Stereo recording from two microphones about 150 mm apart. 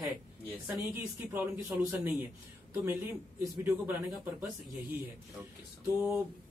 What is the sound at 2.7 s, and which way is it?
Speech, 15° right (ahead or behind).